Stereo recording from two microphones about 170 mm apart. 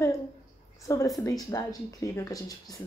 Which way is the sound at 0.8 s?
20° left (ahead or behind).